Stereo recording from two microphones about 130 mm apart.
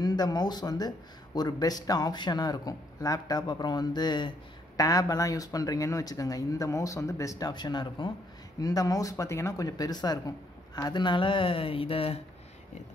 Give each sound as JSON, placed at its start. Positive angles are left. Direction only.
{"t": 0.0, "sound": "speech", "side_deg": 30}